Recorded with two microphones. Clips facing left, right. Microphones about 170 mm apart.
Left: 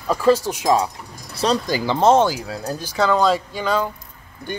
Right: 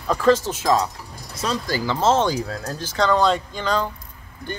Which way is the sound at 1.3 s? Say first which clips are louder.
Left 6 dB; 35° left (ahead or behind).